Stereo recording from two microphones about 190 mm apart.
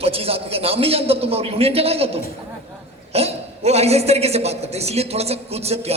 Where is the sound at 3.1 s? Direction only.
35° right (ahead or behind).